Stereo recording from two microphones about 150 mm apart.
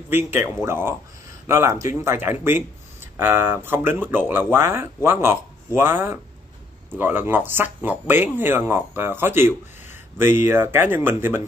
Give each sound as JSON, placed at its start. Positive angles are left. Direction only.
{"t": 0.1, "sound": "speech", "side_deg": -15}